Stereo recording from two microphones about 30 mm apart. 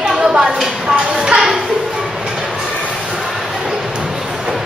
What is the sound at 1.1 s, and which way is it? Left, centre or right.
Speech, right.